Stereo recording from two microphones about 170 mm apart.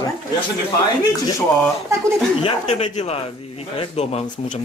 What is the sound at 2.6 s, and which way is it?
A man's voice, 40° left (ahead or behind).